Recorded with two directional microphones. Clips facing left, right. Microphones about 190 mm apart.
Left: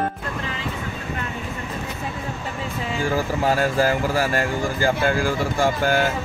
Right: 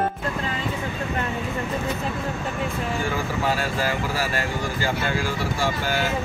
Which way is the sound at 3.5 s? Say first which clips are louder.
Left 7 dB; 45° left (ahead or behind).